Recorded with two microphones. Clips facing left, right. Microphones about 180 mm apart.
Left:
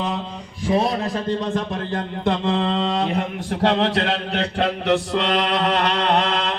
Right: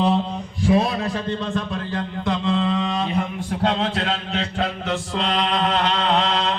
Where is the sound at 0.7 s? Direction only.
35° left (ahead or behind); by 6.3 s 55° left (ahead or behind).